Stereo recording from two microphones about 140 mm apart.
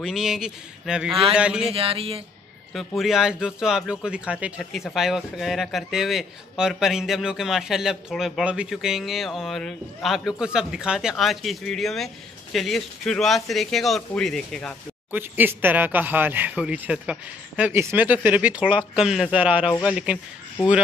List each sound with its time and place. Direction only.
0.0 s speech: centre (ahead or behind)
1.7 s speech: 40° right (ahead or behind)
3.0 s speech: 5° right (ahead or behind)
15.0 s speech: 15° right (ahead or behind)